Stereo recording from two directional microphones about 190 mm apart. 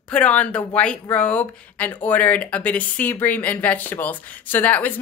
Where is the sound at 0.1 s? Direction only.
5° left (ahead or behind).